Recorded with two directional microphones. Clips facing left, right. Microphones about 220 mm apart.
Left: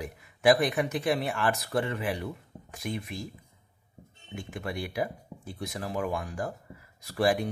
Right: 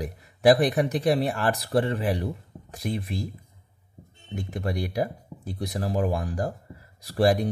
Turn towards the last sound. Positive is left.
turn(degrees=-35)  # may be behind; listen again after turning